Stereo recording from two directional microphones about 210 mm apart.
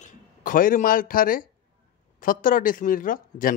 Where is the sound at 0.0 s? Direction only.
40° left (ahead or behind).